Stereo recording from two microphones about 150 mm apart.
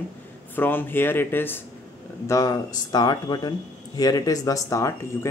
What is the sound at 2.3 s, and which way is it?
Speech, 25° left (ahead or behind).